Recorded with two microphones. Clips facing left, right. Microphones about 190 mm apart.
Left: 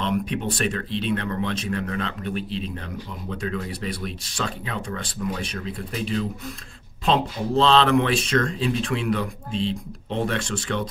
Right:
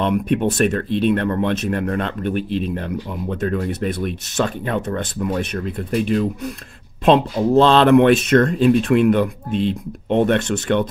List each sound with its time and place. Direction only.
0.0 s speech: 55° right (ahead or behind)